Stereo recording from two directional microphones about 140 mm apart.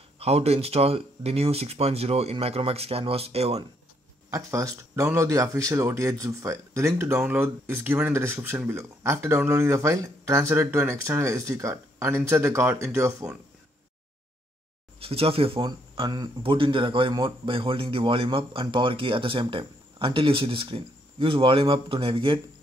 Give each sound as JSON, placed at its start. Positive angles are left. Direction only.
{"t": 0.2, "sound": "speech", "side_deg": -45}
{"t": 4.3, "sound": "speech", "side_deg": -25}
{"t": 15.0, "sound": "speech", "side_deg": -45}